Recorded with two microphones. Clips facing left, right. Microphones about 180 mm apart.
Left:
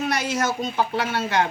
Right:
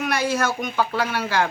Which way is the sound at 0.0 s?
25° left (ahead or behind).